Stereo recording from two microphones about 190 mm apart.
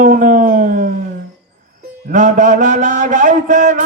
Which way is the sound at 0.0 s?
45° right (ahead or behind).